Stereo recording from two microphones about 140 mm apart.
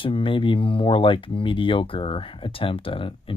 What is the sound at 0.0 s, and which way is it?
Speech, 40° left (ahead or behind).